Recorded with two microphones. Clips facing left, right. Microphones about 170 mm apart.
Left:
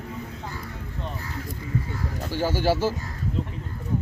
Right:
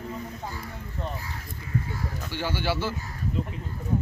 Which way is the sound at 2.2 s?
40° left (ahead or behind).